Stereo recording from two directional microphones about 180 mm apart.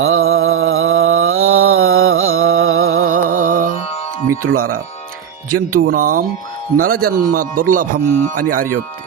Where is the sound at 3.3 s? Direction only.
50° right (ahead or behind).